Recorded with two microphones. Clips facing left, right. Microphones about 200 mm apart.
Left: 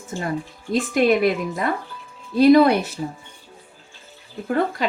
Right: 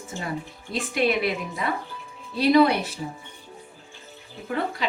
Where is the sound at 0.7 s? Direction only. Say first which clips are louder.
Left 6 dB; 45° left (ahead or behind).